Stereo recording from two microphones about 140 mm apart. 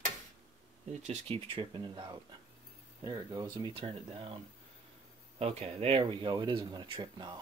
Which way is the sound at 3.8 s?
40° right (ahead or behind).